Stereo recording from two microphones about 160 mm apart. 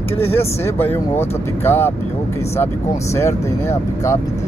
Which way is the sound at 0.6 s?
15° left (ahead or behind).